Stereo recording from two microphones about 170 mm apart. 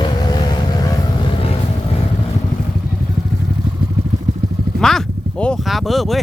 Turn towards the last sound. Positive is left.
turn(degrees=0)  # may be behind; listen again after turning